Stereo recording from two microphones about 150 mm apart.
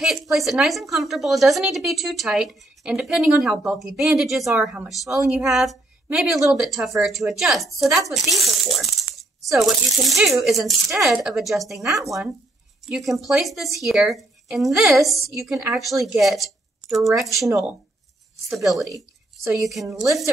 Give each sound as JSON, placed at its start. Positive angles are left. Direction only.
{"t": 0.0, "sound": "a woman's voice", "side_deg": 0}
{"t": 8.1, "sound": "a sound", "side_deg": 0}
{"t": 9.5, "sound": "a woman's voice", "side_deg": 0}
{"t": 19.9, "sound": "a woman's voice", "side_deg": -20}